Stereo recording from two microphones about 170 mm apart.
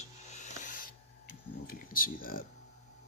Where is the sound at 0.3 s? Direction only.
50° left (ahead or behind).